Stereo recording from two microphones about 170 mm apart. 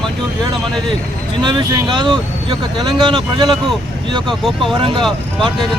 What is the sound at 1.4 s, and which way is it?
Speech, 25° right (ahead or behind).